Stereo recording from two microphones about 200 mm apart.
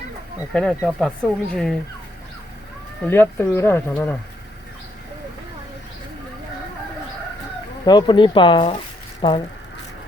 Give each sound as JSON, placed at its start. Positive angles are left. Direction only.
{"t": 0.5, "sound": "speech", "side_deg": 5}
{"t": 3.0, "sound": "speech", "side_deg": 10}
{"t": 7.9, "sound": "speech", "side_deg": 20}